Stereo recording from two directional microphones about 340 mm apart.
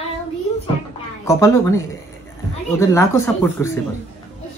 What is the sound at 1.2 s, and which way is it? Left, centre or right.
Speech, centre.